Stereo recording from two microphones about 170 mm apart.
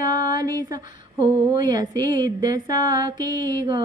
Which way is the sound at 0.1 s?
50° left (ahead or behind).